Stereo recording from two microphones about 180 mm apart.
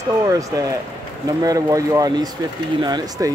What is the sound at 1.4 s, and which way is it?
Speech, 20° right (ahead or behind).